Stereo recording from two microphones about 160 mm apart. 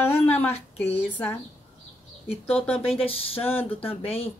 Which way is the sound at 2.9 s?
35° left (ahead or behind).